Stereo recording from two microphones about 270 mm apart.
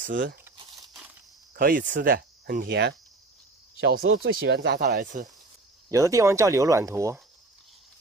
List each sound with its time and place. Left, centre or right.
0.0 s speech: right
1.5 s speech: right
4.1 s speech: right
5.9 s speech: centre